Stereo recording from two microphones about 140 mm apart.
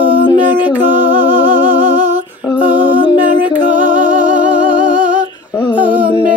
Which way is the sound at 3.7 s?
70° right (ahead or behind).